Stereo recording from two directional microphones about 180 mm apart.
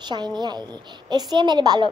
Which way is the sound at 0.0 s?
25° right (ahead or behind).